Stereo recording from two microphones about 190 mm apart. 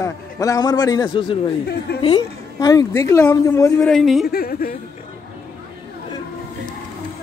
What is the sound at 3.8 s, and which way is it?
Speech, centre (ahead or behind).